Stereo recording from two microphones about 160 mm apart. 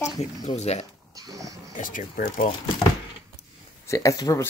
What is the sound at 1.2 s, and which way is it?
Dog, 20° right (ahead or behind).